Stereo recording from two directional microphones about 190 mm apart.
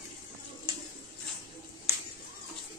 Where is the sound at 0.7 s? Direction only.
25° right (ahead or behind).